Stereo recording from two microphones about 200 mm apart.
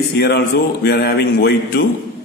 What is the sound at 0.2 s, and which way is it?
A man's voice, 50° left (ahead or behind).